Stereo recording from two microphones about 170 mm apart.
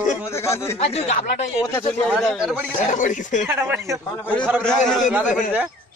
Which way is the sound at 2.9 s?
50° left (ahead or behind).